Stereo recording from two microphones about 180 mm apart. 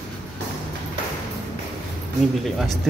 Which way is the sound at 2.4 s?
Centre (ahead or behind).